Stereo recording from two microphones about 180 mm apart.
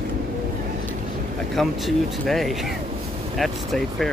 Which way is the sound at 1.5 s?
Centre (ahead or behind).